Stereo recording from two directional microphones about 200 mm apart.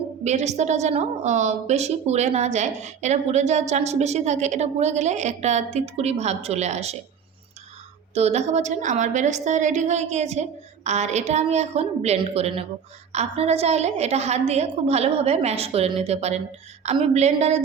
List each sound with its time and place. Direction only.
0.3 s a woman's voice: 35° right (ahead or behind)
8.1 s a woman's voice: 30° right (ahead or behind)